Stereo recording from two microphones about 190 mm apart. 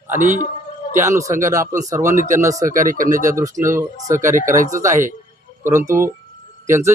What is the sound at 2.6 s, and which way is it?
Speech, 45° right (ahead or behind).